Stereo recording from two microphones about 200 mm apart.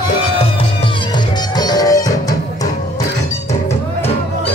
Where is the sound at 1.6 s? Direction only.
20° left (ahead or behind).